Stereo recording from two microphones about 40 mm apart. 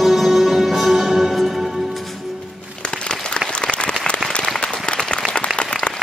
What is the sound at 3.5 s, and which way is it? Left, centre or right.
Applause, left.